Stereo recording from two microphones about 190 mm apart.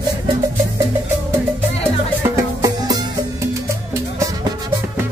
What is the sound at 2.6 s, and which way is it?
Music, 20° right (ahead or behind).